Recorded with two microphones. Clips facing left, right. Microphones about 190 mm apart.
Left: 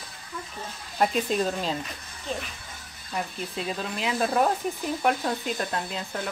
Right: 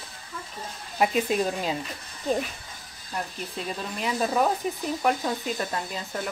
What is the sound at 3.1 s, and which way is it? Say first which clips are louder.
Speech: left 2 dB; 5° left (ahead or behind).